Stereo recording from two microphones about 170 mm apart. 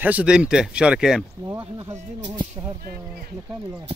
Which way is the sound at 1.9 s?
40° right (ahead or behind).